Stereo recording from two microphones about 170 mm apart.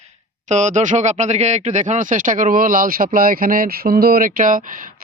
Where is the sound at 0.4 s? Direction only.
45° right (ahead or behind).